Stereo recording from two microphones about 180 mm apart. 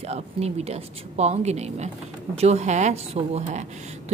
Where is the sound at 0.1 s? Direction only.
35° right (ahead or behind).